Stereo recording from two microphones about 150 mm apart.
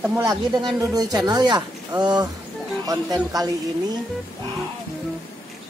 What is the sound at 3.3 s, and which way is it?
Speech, 25° right (ahead or behind).